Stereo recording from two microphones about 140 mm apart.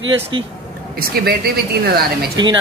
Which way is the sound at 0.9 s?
90° right.